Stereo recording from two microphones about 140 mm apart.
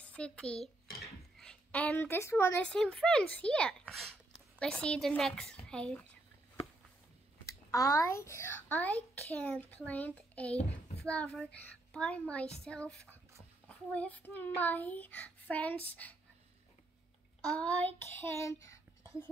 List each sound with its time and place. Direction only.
0.0 s a child's voice: 10° left (ahead or behind)
1.0 s a sound: 5° left (ahead or behind)
2.7 s a child's voice: 5° left (ahead or behind)
7.7 s a child's voice: 20° left (ahead or behind)
17.6 s child singing: 10° left (ahead or behind)